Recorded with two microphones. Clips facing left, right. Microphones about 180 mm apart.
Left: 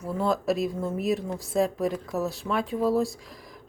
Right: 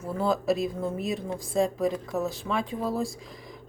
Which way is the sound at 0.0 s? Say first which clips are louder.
Even; centre (ahead or behind).